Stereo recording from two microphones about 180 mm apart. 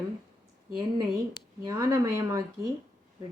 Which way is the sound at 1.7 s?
20° right (ahead or behind).